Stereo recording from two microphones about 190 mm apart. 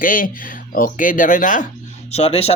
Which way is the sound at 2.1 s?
30° left (ahead or behind).